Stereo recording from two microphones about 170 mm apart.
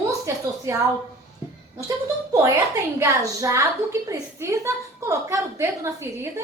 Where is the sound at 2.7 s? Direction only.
15° right (ahead or behind).